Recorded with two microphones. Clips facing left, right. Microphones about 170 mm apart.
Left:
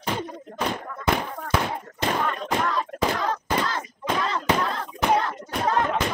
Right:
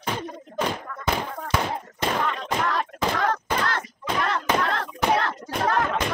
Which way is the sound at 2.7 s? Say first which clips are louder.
Even; 70° right (ahead or behind).